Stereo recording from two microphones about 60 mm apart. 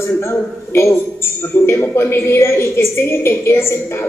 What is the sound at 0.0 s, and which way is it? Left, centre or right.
A man's voice, left.